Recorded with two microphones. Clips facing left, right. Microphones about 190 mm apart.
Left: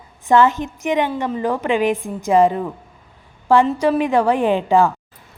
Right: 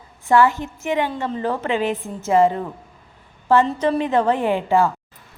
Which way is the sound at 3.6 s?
5° left (ahead or behind).